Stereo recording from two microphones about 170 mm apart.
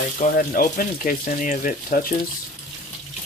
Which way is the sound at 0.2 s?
55° left (ahead or behind).